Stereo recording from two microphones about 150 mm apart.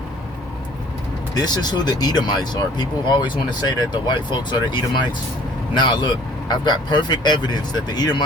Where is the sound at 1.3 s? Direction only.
25° left (ahead or behind).